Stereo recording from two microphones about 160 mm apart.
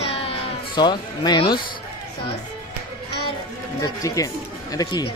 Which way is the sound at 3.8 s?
20° left (ahead or behind).